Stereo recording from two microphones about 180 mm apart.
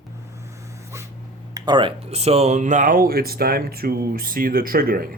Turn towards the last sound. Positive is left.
turn(degrees=-55)  # may be behind; listen again after turning